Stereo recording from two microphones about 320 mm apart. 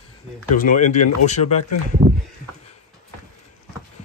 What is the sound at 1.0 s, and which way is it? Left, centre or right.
Speech, left.